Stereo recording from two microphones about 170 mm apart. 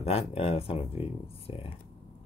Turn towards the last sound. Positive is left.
turn(degrees=35)  # may be behind; listen again after turning